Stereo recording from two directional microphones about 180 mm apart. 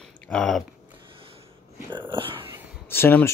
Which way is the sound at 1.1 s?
30° right (ahead or behind).